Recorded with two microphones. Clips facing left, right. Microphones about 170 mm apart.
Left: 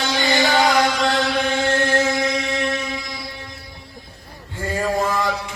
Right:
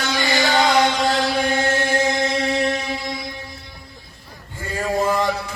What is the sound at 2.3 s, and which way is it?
Mantra, 35° right (ahead or behind).